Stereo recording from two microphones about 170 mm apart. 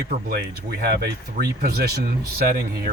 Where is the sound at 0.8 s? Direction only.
70° right (ahead or behind).